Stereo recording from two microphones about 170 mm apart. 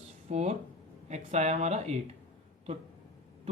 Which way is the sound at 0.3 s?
40° right (ahead or behind).